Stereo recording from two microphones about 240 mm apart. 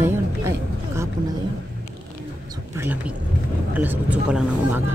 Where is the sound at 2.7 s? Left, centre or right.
Centre.